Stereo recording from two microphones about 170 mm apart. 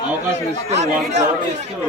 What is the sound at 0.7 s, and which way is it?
Speech, 40° right (ahead or behind).